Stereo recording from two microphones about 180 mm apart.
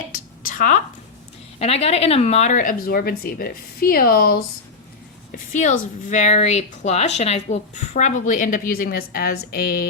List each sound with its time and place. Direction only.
0.4 s a woman's voice: 45° left (ahead or behind)
1.5 s speech: 35° left (ahead or behind); by 4.4 s 55° left (ahead or behind)
5.3 s a sound: 45° left (ahead or behind)
6.1 s speech: 40° left (ahead or behind)